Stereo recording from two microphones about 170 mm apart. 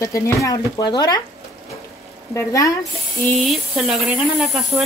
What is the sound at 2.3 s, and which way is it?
Speech, 20° left (ahead or behind).